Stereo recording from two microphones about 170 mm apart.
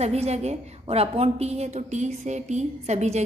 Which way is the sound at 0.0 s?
40° right (ahead or behind).